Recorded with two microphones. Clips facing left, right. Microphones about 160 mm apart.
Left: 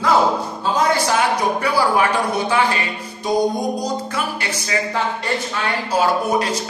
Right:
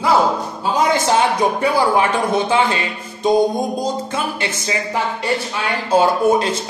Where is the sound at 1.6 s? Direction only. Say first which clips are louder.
Right 2 dB; 25° right (ahead or behind).